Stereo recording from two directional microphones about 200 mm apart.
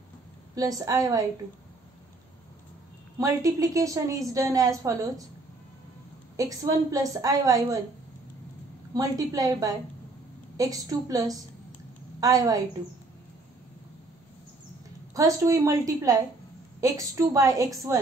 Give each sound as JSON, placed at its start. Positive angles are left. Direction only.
{"t": 0.6, "sound": "a woman's voice", "side_deg": -20}
{"t": 3.2, "sound": "a woman's voice", "side_deg": -15}
{"t": 6.3, "sound": "a woman's voice", "side_deg": -15}
{"t": 8.9, "sound": "a woman's voice", "side_deg": -20}
{"t": 15.1, "sound": "a woman's voice", "side_deg": -15}